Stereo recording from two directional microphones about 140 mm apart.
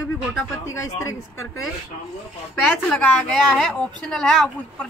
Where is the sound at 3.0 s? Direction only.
10° left (ahead or behind).